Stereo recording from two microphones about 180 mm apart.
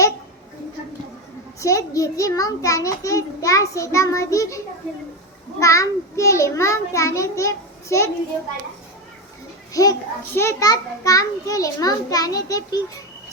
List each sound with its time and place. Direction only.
1.5 s a child's voice: 15° left (ahead or behind)
9.7 s a child's voice: 20° left (ahead or behind)